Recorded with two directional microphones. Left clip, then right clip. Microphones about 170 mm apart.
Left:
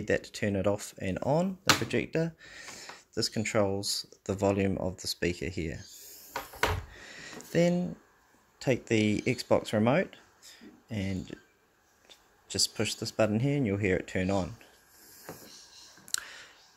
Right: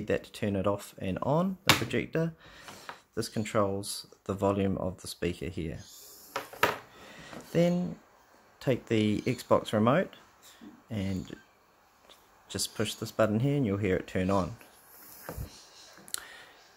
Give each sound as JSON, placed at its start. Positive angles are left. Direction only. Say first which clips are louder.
{"t": 0.0, "sound": "speech", "louder": "left 1 dB", "side_deg": 5}
{"t": 7.0, "sound": "a sound", "louder": "left 1 dB", "side_deg": 0}
{"t": 8.5, "sound": "speech", "louder": "left 1 dB", "side_deg": 0}
{"t": 16.1, "sound": "clicking", "louder": "left 5 dB", "side_deg": 0}